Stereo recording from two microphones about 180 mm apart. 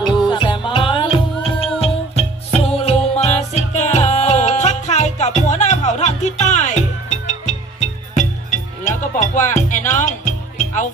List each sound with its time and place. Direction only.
0.3 s music: 25° left (ahead or behind); by 10.3 s 45° left (ahead or behind)